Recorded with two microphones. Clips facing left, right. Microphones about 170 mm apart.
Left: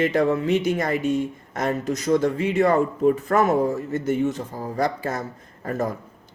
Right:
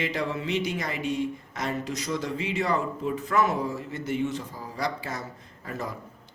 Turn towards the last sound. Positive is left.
turn(degrees=50)  # may be behind; listen again after turning